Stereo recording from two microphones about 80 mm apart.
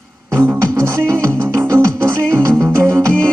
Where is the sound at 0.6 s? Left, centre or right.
Right.